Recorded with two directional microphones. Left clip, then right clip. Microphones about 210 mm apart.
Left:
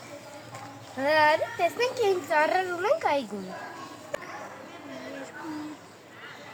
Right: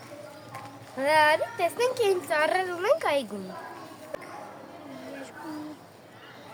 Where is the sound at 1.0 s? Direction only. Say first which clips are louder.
Right 1 dB; 10° right (ahead or behind).